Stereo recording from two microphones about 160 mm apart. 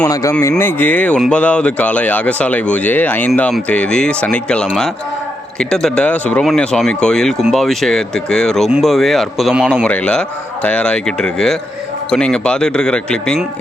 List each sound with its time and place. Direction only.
0.1 s speech: 20° left (ahead or behind); by 9.8 s 5° right (ahead or behind)
9.8 s speech: 5° left (ahead or behind)